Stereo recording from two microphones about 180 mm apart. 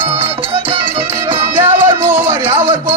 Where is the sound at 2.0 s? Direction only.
10° right (ahead or behind).